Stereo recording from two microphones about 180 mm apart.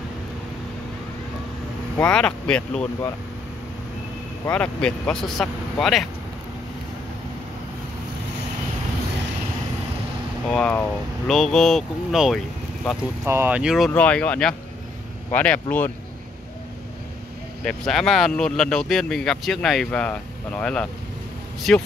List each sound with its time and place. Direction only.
2.0 s speech: 5° left (ahead or behind)
4.5 s speech: 5° left (ahead or behind)
10.5 s speech: 5° left (ahead or behind)
13.2 s speech: 10° right (ahead or behind); by 15.9 s 10° left (ahead or behind)
17.6 s speech: 5° left (ahead or behind)